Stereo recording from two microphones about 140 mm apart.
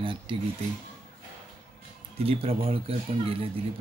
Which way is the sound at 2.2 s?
45° right (ahead or behind).